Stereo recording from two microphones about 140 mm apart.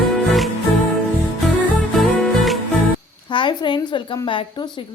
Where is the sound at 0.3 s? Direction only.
Centre (ahead or behind).